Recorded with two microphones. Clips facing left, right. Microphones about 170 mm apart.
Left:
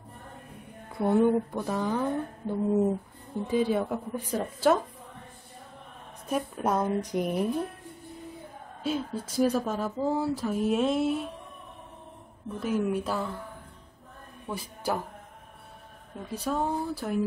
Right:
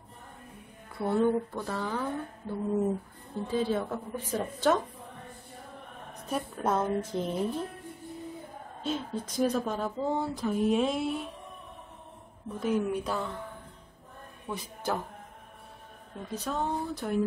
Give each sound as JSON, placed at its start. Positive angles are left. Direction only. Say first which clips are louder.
{"t": 0.9, "sound": "speech", "louder": "left 3 dB", "side_deg": 15}
{"t": 6.2, "sound": "speech", "louder": "left 2 dB", "side_deg": 10}
{"t": 8.8, "sound": "speech", "louder": "left 2 dB", "side_deg": 10}
{"t": 12.5, "sound": "speech", "louder": "left 1 dB", "side_deg": 5}
{"t": 14.5, "sound": "speech", "louder": "left 2 dB", "side_deg": 10}
{"t": 16.3, "sound": "speech", "louder": "left 3 dB", "side_deg": 10}